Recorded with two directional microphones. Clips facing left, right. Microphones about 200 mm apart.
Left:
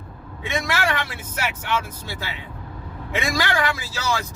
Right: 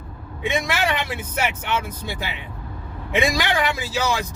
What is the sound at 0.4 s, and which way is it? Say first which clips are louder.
Speech: right 2 dB; 20° right (ahead or behind).